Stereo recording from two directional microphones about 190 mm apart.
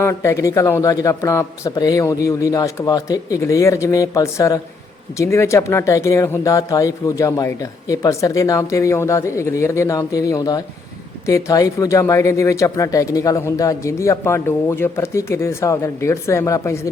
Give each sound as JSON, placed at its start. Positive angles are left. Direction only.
{"t": 0.0, "sound": "speech", "side_deg": 15}